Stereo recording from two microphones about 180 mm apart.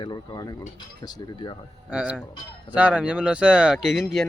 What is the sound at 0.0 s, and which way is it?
Mechanisms, 20° left (ahead or behind).